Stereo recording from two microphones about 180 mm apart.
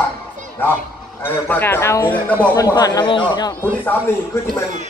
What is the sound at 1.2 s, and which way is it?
Speech, 10° left (ahead or behind).